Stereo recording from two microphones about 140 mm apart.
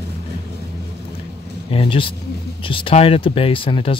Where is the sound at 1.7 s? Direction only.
40° left (ahead or behind).